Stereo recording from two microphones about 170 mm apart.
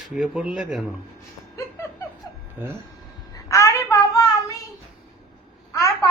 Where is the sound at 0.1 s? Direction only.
5° right (ahead or behind).